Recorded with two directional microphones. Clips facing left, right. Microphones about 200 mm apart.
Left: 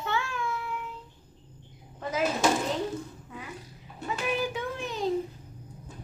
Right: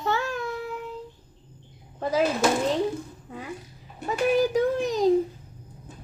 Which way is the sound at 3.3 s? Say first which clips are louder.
Right 5 dB; 35° right (ahead or behind).